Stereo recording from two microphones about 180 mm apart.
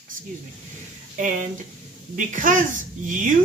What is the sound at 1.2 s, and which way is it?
Speech, 45° right (ahead or behind).